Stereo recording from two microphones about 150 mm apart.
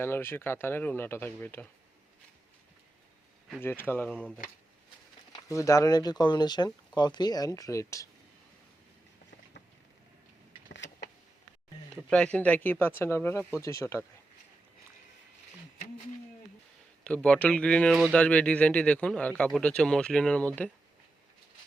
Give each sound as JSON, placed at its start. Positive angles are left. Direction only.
{"t": 0.0, "sound": "speech", "side_deg": 15}
{"t": 3.6, "sound": "speech", "side_deg": 15}
{"t": 4.1, "sound": "speech", "side_deg": -5}
{"t": 5.3, "sound": "speech", "side_deg": 20}
{"t": 12.0, "sound": "speech", "side_deg": 5}
{"t": 17.0, "sound": "speech", "side_deg": 5}